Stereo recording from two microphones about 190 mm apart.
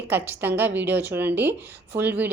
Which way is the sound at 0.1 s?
10° right (ahead or behind).